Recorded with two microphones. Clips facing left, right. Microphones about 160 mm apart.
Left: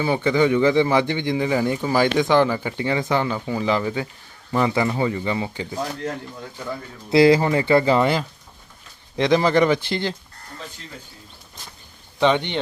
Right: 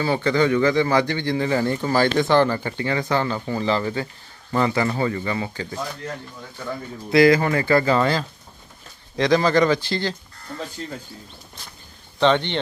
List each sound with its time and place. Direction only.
0.0 s a man's voice: 15° left (ahead or behind)
7.1 s speech: 25° left (ahead or behind)
12.2 s a man's voice: 10° left (ahead or behind)